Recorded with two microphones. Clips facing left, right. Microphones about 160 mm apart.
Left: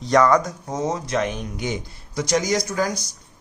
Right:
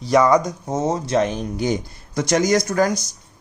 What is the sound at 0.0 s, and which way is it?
Speech, 10° right (ahead or behind).